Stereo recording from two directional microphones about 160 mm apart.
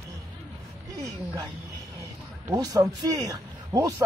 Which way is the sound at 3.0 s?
25° right (ahead or behind).